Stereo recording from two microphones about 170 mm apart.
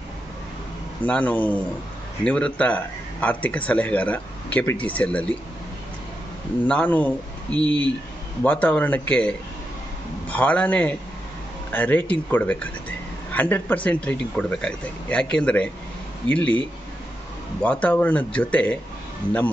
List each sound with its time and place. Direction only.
1.0 s speech: 10° left (ahead or behind)
6.7 s speech: 10° left (ahead or behind)
7.5 s speech: 25° right (ahead or behind)
8.5 s speech: 10° left (ahead or behind)